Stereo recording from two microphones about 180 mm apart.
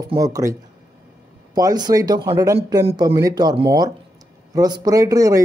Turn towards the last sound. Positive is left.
turn(degrees=-20)  # may be behind; listen again after turning